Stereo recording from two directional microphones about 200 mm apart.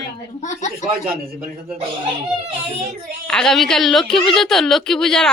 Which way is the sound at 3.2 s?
5° left (ahead or behind).